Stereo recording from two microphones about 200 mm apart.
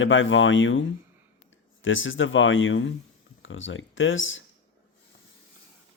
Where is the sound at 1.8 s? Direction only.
70° left (ahead or behind).